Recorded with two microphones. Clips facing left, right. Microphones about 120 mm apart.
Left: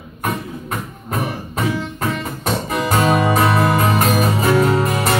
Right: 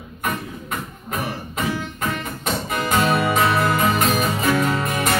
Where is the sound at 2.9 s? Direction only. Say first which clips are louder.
Left 3 dB; 35° left (ahead or behind).